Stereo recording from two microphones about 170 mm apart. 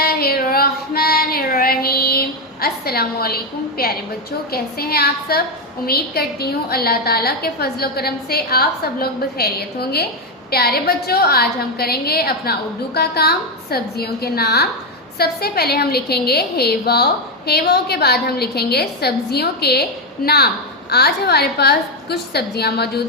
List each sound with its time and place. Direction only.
0.0 s child singing: 65° left (ahead or behind)
4.5 s a woman's voice: 65° left (ahead or behind)